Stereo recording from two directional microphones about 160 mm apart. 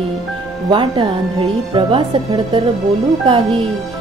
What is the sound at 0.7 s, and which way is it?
Speech, 30° right (ahead or behind).